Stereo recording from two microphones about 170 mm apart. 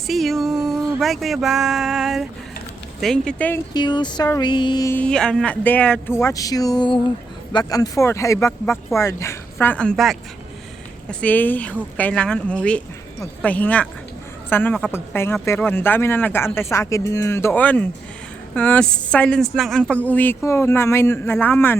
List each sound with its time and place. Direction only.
0.1 s speech: centre (ahead or behind)
3.8 s a sound: 25° left (ahead or behind)
4.9 s speech: 5° left (ahead or behind)